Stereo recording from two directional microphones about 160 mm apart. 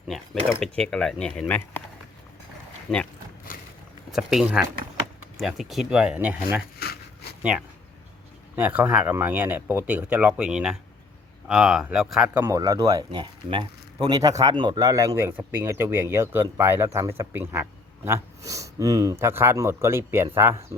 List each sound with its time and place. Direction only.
0.6 s speech: 5° left (ahead or behind)
2.9 s speech: 5° right (ahead or behind)
4.1 s speech: centre (ahead or behind)
6.7 s zipper: 75° left (ahead or behind)
8.5 s speech: 10° right (ahead or behind)
12.4 s speech: 20° right (ahead or behind)